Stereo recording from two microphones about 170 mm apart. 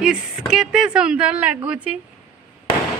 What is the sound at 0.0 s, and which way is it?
Speech, 5° right (ahead or behind).